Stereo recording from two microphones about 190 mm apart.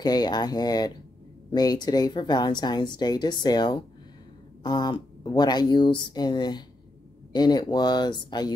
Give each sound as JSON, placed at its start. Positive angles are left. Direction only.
{"t": 0.0, "sound": "speech", "side_deg": 20}